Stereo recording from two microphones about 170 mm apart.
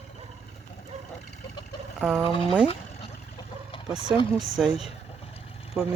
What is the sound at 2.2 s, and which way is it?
Speech, 30° left (ahead or behind).